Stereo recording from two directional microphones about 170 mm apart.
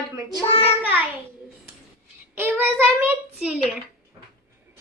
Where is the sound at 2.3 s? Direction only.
10° right (ahead or behind).